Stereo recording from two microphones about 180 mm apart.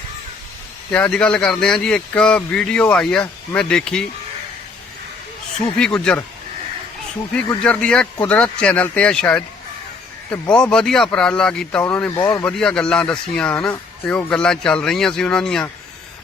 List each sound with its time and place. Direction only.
0.9 s speech: 5° left (ahead or behind)
5.5 s speech: 5° left (ahead or behind)
7.3 s speech: 5° left (ahead or behind)
10.5 s speech: 5° left (ahead or behind)